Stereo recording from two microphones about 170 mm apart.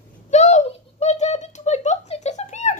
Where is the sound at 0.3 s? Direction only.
40° left (ahead or behind).